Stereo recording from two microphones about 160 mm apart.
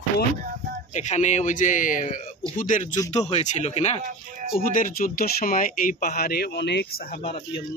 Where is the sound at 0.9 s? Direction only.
45° left (ahead or behind).